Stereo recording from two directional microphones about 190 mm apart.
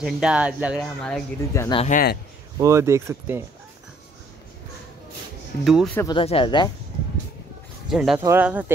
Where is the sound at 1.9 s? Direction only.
55° left (ahead or behind).